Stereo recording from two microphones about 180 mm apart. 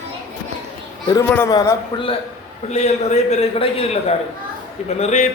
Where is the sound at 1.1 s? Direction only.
15° left (ahead or behind).